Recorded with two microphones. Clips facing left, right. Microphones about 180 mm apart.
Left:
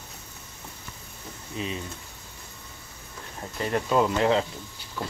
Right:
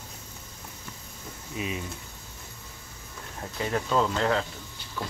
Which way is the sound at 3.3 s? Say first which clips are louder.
Left 2 dB; centre (ahead or behind).